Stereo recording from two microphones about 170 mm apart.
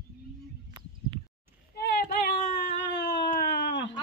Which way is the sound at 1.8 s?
65° left (ahead or behind).